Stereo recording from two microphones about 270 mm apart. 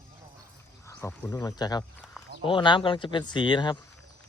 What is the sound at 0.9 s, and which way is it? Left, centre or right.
Speech, centre.